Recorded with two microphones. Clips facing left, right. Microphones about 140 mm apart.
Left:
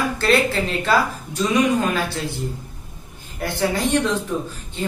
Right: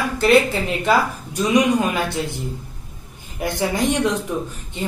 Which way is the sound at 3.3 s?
15° right (ahead or behind).